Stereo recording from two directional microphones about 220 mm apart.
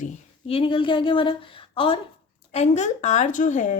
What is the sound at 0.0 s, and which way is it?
A woman's voice, 25° left (ahead or behind).